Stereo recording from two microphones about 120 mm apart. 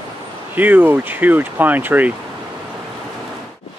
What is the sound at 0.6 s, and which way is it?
Speech, 15° right (ahead or behind).